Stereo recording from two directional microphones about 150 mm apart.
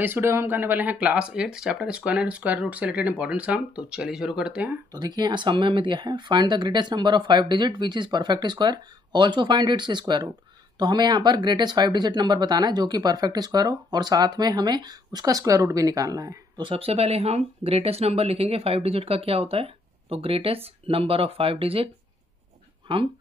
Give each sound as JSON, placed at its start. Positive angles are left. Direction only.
{"t": 0.0, "sound": "speech", "side_deg": -15}
{"t": 4.9, "sound": "speech", "side_deg": -30}
{"t": 22.9, "sound": "speech", "side_deg": -35}